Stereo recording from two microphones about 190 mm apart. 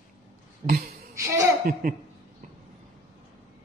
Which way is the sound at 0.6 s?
55° right (ahead or behind).